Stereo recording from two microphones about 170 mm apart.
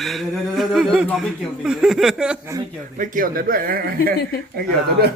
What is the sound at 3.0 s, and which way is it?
A man's voice, 55° right (ahead or behind).